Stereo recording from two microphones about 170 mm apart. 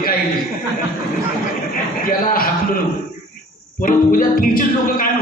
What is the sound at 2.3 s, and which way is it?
Speech, 60° left (ahead or behind).